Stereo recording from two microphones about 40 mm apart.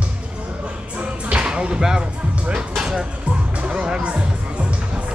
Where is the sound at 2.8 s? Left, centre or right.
Centre.